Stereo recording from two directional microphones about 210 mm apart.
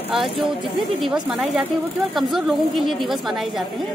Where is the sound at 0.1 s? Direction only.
Centre (ahead or behind).